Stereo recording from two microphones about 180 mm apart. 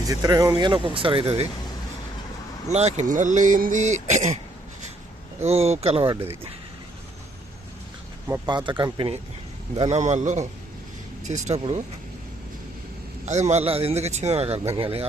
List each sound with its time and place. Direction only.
0.1 s speech: 20° right (ahead or behind)
2.6 s speech: 40° right (ahead or behind)
5.4 s speech: 35° right (ahead or behind)
8.3 s speech: 25° right (ahead or behind)
9.7 s speech: 35° right (ahead or behind)
13.2 s speech: 40° right (ahead or behind)